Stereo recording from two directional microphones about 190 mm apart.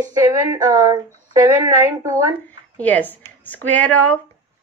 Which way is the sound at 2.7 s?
10° left (ahead or behind).